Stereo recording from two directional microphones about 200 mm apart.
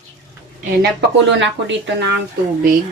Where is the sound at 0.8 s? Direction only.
60° right (ahead or behind).